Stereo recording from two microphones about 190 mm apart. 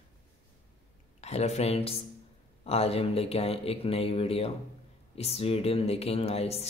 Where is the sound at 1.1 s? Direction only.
35° left (ahead or behind).